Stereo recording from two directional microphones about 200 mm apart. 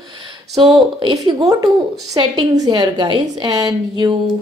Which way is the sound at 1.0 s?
20° right (ahead or behind).